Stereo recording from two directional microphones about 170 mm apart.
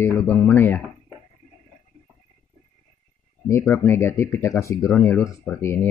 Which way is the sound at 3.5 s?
15° left (ahead or behind).